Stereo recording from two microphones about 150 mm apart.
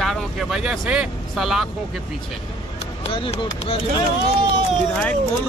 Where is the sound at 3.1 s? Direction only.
40° left (ahead or behind).